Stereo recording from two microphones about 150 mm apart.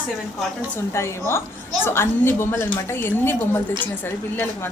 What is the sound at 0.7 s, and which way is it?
A woman's voice, 20° left (ahead or behind).